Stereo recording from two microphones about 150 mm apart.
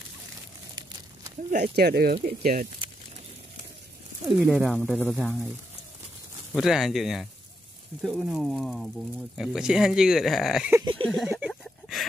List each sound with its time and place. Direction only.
1.5 s speech: 75° right (ahead or behind)
4.3 s speech: 5° right (ahead or behind)
6.5 s speech: centre (ahead or behind)
11.1 s a sound: centre (ahead or behind)